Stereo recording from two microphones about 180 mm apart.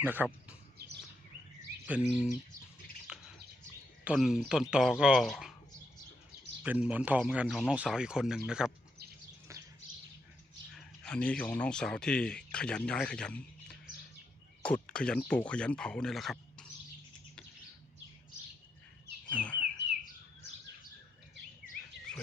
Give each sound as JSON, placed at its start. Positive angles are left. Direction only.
{"t": 0.0, "sound": "speech", "side_deg": -10}
{"t": 1.9, "sound": "speech", "side_deg": -5}
{"t": 3.1, "sound": "bird", "side_deg": -5}
{"t": 4.0, "sound": "speech", "side_deg": -5}
{"t": 6.6, "sound": "speech", "side_deg": -5}
{"t": 10.8, "sound": "speech", "side_deg": 5}
{"t": 19.3, "sound": "bird", "side_deg": 5}